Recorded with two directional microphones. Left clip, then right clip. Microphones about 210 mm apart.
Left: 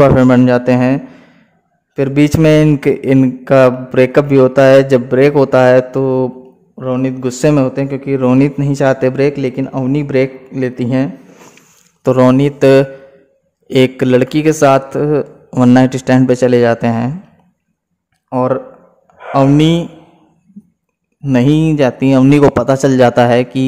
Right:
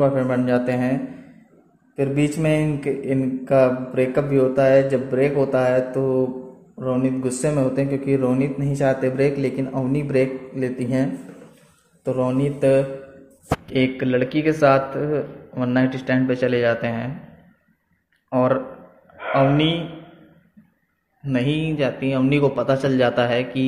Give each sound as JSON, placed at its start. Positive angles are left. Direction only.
{"t": 0.0, "sound": "a man's voice", "side_deg": 40}
{"t": 2.0, "sound": "a man's voice", "side_deg": 45}
{"t": 12.0, "sound": "speech", "side_deg": 50}
{"t": 18.3, "sound": "speech", "side_deg": 40}
{"t": 19.3, "sound": "speech", "side_deg": 50}
{"t": 21.2, "sound": "speech", "side_deg": 45}